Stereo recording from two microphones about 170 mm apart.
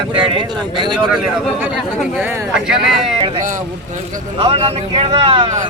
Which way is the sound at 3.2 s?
40° right (ahead or behind).